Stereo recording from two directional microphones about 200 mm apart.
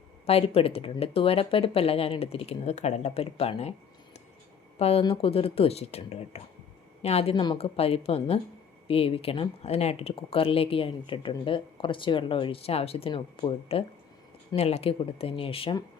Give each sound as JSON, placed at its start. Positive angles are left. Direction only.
{"t": 0.3, "sound": "speech", "side_deg": 30}